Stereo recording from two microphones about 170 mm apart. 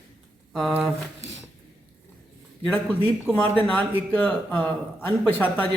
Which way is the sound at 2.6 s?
10° left (ahead or behind).